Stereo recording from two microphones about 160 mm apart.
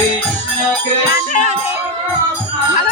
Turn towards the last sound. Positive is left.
turn(degrees=55)  # may be behind; listen again after turning